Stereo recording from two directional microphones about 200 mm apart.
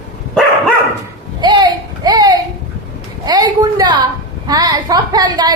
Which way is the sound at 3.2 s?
20° right (ahead or behind).